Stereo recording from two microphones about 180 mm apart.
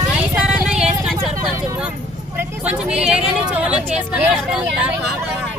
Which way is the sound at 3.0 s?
5° right (ahead or behind).